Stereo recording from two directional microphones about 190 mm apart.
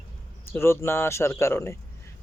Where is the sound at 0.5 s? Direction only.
15° left (ahead or behind).